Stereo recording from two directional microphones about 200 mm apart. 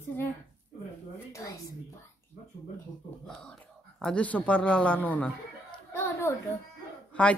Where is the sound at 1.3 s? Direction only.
15° left (ahead or behind).